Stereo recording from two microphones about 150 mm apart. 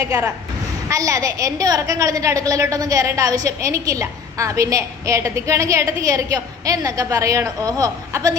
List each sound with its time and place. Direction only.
0.1 s a woman's voice: 20° right (ahead or behind)